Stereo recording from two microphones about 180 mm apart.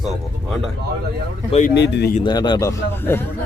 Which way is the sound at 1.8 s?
70° left (ahead or behind).